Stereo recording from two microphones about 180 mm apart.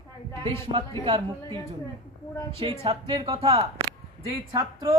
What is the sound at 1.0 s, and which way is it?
Speech, 30° right (ahead or behind).